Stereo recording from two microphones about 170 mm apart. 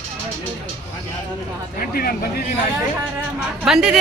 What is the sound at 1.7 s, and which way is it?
Speech, 60° left (ahead or behind).